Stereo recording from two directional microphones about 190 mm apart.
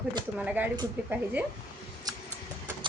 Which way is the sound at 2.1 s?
20° right (ahead or behind).